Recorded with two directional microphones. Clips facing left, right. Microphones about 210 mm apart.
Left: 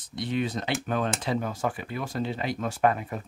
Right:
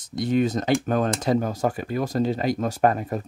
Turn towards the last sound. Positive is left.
turn(degrees=-40)  # may be behind; listen again after turning